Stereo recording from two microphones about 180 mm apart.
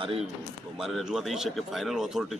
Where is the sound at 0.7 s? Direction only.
Centre (ahead or behind).